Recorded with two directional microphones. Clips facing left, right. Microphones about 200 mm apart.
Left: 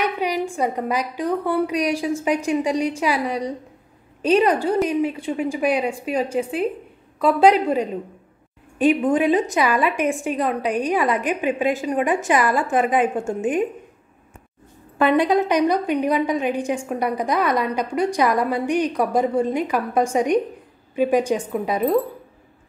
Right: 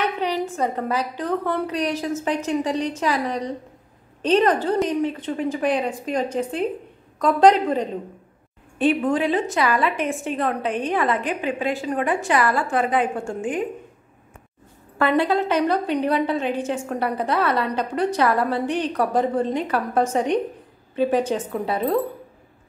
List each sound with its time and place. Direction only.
0.0 s a woman's voice: 10° left (ahead or behind)
15.0 s a woman's voice: 15° left (ahead or behind)